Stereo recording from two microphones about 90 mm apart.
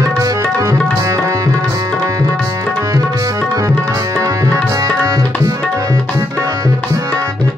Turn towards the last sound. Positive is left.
turn(degrees=-40)  # may be behind; listen again after turning